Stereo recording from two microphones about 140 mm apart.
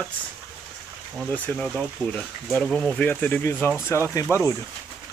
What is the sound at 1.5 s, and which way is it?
Speech, 10° left (ahead or behind).